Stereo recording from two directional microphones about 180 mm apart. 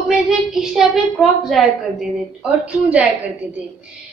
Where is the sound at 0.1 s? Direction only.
5° right (ahead or behind).